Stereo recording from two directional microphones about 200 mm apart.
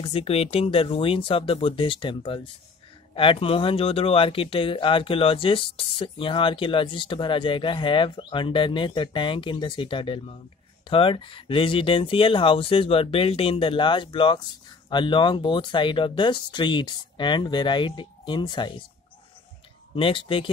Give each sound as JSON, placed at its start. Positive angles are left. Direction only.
{"t": 0.0, "sound": "speech", "side_deg": 30}
{"t": 20.0, "sound": "speech", "side_deg": 25}